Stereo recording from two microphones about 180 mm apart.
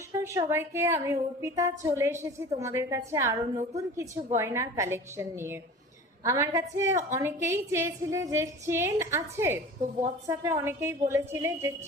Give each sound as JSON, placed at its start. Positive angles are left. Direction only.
{"t": 0.1, "sound": "a woman's voice", "side_deg": -20}